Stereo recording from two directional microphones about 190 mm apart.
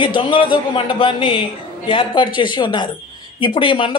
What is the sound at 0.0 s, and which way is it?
A woman's voice, 25° left (ahead or behind).